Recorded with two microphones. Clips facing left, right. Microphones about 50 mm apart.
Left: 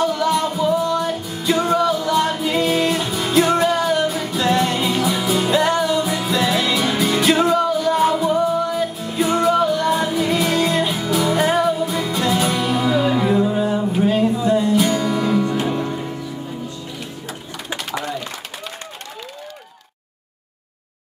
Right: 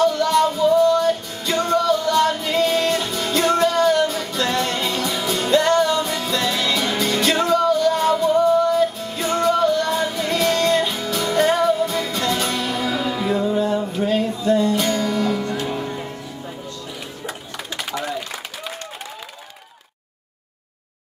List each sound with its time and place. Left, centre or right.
0.0 s music: centre